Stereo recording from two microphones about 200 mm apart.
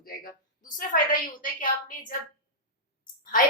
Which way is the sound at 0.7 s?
40° left (ahead or behind).